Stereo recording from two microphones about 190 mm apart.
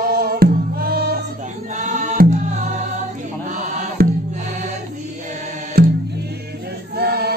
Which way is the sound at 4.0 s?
55° right (ahead or behind).